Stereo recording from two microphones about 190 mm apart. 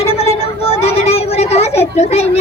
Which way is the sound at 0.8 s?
35° left (ahead or behind).